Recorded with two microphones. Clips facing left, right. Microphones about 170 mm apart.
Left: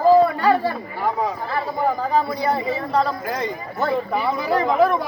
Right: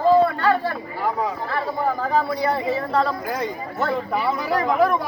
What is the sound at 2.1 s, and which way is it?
Speech, centre (ahead or behind).